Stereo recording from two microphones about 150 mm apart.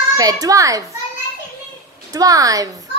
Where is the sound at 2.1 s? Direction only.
25° right (ahead or behind).